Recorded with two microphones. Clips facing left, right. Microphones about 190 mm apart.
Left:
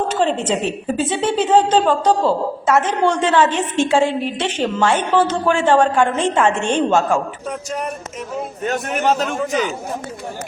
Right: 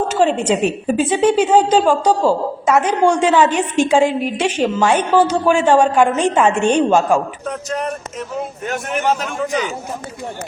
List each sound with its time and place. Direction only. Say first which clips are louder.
0.1 s a woman's voice: right 3 dB; 10° right (ahead or behind)